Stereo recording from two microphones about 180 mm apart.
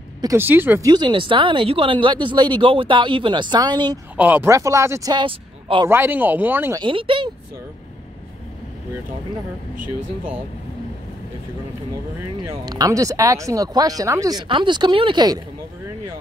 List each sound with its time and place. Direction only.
0.2 s speech: 15° right (ahead or behind)
4.2 s speech: 10° right (ahead or behind); by 5.9 s 25° right (ahead or behind)
5.9 s speech: 10° right (ahead or behind)
6.8 s speech: 30° right (ahead or behind)
12.6 s speech: 20° right (ahead or behind)